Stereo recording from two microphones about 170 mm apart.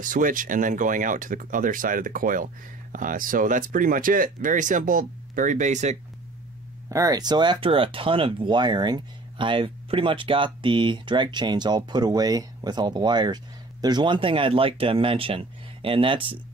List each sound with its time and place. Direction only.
0.0 s speech: 50° right (ahead or behind)
6.9 s speech: 20° right (ahead or behind)